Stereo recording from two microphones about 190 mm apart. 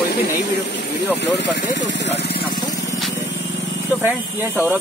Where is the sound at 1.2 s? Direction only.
65° left (ahead or behind).